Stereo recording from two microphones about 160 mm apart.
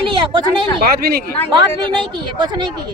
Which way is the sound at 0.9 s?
75° right (ahead or behind).